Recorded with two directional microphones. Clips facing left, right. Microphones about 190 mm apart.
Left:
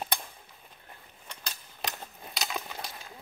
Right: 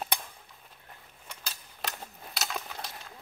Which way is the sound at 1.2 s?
5° right (ahead or behind).